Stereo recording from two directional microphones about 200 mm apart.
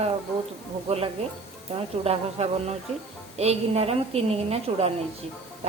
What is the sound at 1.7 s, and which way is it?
Speech, 30° right (ahead or behind).